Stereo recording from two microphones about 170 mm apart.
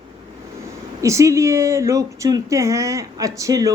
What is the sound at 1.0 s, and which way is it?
A woman's voice, 20° right (ahead or behind).